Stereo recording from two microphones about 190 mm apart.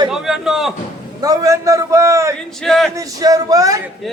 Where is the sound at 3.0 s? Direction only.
20° right (ahead or behind).